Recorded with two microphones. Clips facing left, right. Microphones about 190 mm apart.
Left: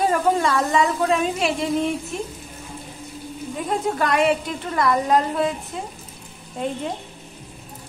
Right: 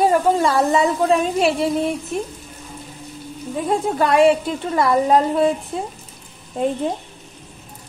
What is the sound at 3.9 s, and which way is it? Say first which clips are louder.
A woman's voice: right 6 dB; 30° right (ahead or behind).